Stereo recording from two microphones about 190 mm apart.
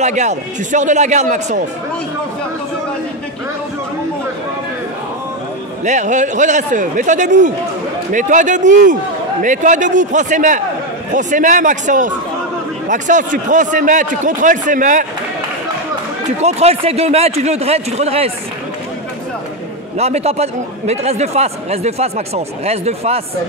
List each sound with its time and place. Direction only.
0.0 s speech: 35° right (ahead or behind)
5.9 s a man's voice: 40° right (ahead or behind)
16.3 s speech: 35° right (ahead or behind)
20.0 s speech: 35° right (ahead or behind)